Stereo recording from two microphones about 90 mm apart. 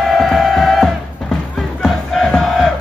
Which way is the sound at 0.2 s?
Centre (ahead or behind).